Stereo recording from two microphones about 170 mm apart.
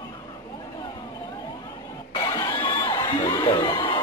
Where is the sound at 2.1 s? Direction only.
25° left (ahead or behind).